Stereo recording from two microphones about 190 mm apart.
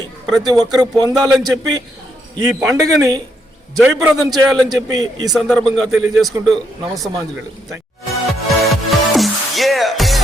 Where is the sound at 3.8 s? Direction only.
5° right (ahead or behind).